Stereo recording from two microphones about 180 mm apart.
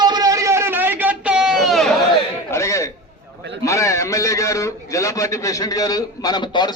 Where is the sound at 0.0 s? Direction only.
20° right (ahead or behind); by 2.0 s centre (ahead or behind).